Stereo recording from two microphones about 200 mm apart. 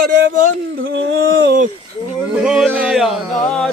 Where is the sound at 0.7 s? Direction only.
60° right (ahead or behind).